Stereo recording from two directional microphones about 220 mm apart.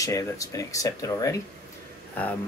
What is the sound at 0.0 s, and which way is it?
Speech, 15° left (ahead or behind).